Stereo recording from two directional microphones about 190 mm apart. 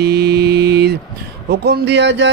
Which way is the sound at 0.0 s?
60° right (ahead or behind).